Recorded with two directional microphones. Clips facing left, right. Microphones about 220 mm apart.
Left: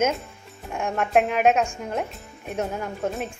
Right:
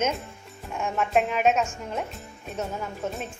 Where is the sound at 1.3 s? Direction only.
55° left (ahead or behind).